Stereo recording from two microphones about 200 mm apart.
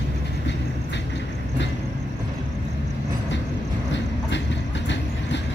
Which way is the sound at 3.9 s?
65° left (ahead or behind).